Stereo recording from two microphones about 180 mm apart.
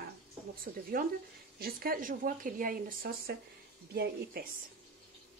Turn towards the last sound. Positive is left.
turn(degrees=-60)  # may be behind; listen again after turning